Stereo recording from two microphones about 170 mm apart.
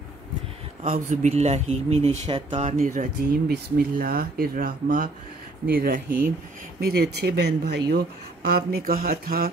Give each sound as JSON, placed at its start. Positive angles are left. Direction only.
{"t": 0.8, "sound": "speech", "side_deg": -45}
{"t": 2.6, "sound": "speech", "side_deg": -45}
{"t": 3.4, "sound": "speech", "side_deg": -65}